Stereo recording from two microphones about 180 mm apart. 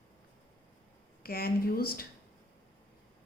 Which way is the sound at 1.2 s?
55° left (ahead or behind).